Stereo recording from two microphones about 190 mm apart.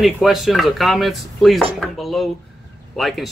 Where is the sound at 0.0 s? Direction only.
Centre (ahead or behind).